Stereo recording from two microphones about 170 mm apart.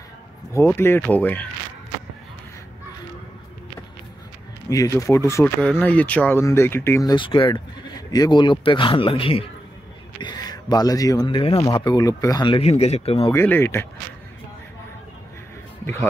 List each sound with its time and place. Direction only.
0.5 s speech: 15° left (ahead or behind)
4.6 s speech: 20° left (ahead or behind); by 13.3 s 35° left (ahead or behind)
13.3 s speech: 15° left (ahead or behind)